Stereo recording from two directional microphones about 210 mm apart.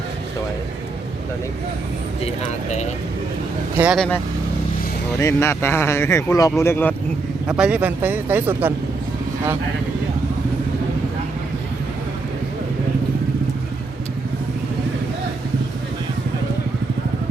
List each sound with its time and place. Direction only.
2.2 s speech: 35° left (ahead or behind)
3.8 s speech: centre (ahead or behind)
5.2 s speech: 10° left (ahead or behind)
7.4 s speech: 5° right (ahead or behind)